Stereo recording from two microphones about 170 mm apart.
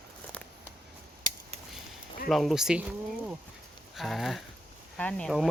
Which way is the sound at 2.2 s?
Centre (ahead or behind).